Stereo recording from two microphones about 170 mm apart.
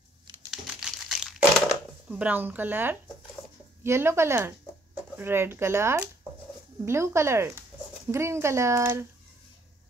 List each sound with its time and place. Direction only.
0.5 s crumpling: centre (ahead or behind)
3.8 s speech: 15° right (ahead or behind)